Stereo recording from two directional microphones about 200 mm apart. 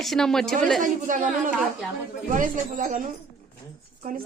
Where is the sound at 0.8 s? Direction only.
40° right (ahead or behind).